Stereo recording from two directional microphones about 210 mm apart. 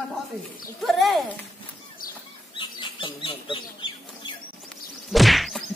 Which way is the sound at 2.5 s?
25° left (ahead or behind).